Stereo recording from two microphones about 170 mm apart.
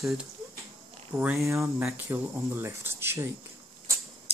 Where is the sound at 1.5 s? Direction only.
15° right (ahead or behind).